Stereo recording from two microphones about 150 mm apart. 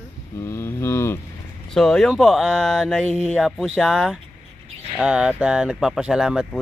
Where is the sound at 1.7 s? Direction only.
5° left (ahead or behind).